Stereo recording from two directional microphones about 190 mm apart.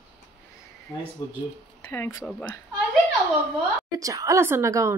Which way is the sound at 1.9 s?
15° left (ahead or behind).